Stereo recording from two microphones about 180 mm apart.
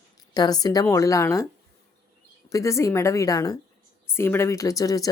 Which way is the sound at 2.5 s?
15° left (ahead or behind).